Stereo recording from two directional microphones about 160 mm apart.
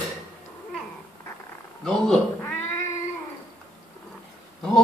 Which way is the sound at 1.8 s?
5° left (ahead or behind).